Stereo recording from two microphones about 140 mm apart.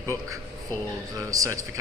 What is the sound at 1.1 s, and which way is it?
Speech, 25° right (ahead or behind).